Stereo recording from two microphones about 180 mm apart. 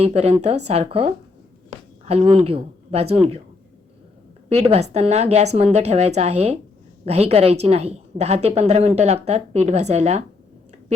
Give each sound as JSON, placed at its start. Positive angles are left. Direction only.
{"t": 0.0, "sound": "a woman's voice", "side_deg": -35}
{"t": 2.2, "sound": "a woman's voice", "side_deg": -35}
{"t": 4.4, "sound": "a woman's voice", "side_deg": -35}